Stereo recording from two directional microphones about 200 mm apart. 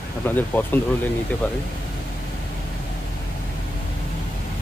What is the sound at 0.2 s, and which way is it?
Speech, 10° left (ahead or behind).